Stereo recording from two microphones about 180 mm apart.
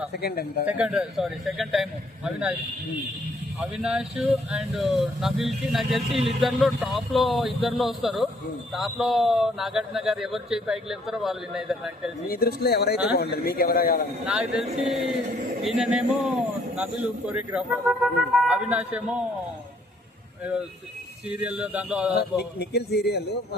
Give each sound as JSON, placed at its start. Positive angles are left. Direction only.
{"t": 0.1, "sound": "speech", "side_deg": 60}
{"t": 0.6, "sound": "speech", "side_deg": -5}
{"t": 3.6, "sound": "speech", "side_deg": -5}
{"t": 6.1, "sound": "speech", "side_deg": -30}
{"t": 6.4, "sound": "speech", "side_deg": 0}
{"t": 12.3, "sound": "speech", "side_deg": 60}
{"t": 14.3, "sound": "speech", "side_deg": -5}
{"t": 15.6, "sound": "speech", "side_deg": 0}
{"t": 21.2, "sound": "speech", "side_deg": -10}
{"t": 22.1, "sound": "speech", "side_deg": 65}